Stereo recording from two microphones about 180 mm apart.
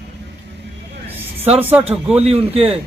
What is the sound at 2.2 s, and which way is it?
Speech, 35° right (ahead or behind).